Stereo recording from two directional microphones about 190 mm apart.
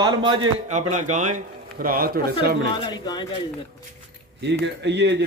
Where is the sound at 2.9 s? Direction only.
20° left (ahead or behind).